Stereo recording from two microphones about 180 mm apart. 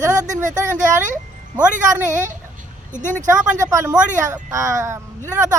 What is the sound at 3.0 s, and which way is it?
Speech, 45° right (ahead or behind).